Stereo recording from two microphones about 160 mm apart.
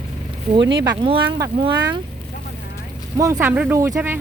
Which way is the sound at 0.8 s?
30° right (ahead or behind).